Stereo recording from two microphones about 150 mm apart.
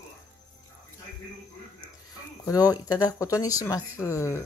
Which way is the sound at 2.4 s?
25° left (ahead or behind).